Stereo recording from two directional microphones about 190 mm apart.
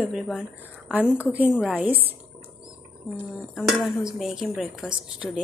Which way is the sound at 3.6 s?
Centre (ahead or behind).